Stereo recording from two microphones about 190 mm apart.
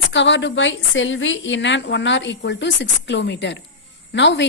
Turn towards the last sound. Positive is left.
turn(degrees=70)  # may be behind; listen again after turning